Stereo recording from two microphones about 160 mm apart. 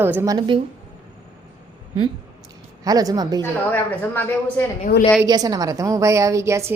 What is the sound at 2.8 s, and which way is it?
Speech, 25° right (ahead or behind).